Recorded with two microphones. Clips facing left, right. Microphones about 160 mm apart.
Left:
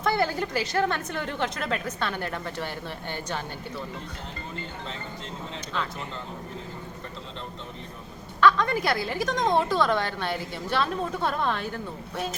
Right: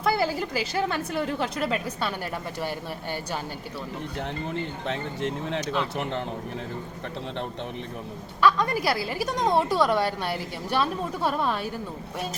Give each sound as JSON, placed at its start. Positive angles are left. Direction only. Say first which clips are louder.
{"t": 0.0, "sound": "a woman's voice", "louder": "right 1 dB", "side_deg": -5}
{"t": 4.9, "sound": "speech", "louder": "right 8 dB", "side_deg": -70}
{"t": 8.4, "sound": "a woman's voice", "louder": "left 1 dB", "side_deg": -10}